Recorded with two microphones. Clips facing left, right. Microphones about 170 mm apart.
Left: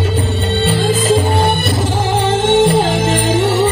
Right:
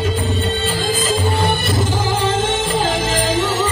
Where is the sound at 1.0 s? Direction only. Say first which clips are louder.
Left 4 dB; 60° left (ahead or behind).